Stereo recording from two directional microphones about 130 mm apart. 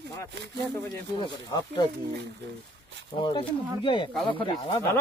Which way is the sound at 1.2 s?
30° left (ahead or behind).